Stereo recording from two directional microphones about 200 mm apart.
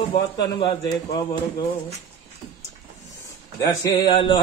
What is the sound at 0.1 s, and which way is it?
A man's voice, 20° left (ahead or behind).